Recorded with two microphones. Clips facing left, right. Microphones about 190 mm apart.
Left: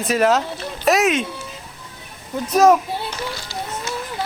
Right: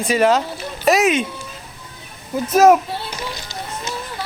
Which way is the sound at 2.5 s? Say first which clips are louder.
Right 2 dB; 5° right (ahead or behind).